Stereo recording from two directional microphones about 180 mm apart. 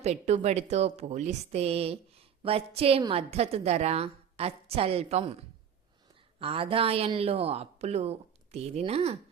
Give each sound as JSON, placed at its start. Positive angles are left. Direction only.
{"t": 0.0, "sound": "a woman's voice", "side_deg": -40}